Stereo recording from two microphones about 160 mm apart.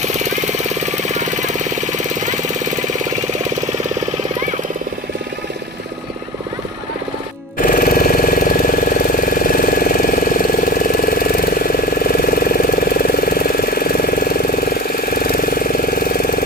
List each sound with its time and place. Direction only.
0.0 s jackhammer: 45° right (ahead or behind)
7.6 s engine: 60° left (ahead or behind)